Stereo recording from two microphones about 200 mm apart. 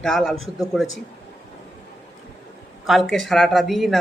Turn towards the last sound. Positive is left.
turn(degrees=0)  # may be behind; listen again after turning